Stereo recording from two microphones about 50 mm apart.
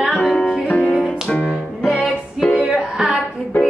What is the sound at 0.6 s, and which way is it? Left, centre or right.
Music, left.